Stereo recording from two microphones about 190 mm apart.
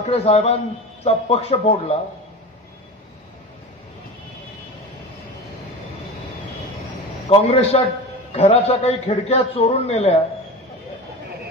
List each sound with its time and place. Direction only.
0.1 s a man's voice: 35° left (ahead or behind)
7.2 s a man's voice: 35° left (ahead or behind)